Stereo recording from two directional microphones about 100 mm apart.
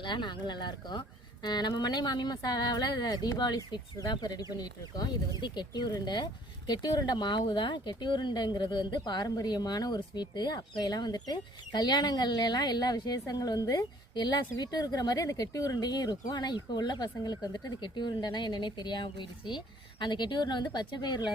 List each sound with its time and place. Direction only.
0.0 s speech: 50° left (ahead or behind)